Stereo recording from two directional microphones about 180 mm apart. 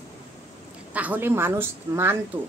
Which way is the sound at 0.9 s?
10° right (ahead or behind).